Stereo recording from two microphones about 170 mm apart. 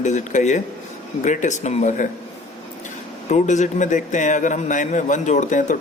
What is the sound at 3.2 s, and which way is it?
A man's voice, 45° left (ahead or behind).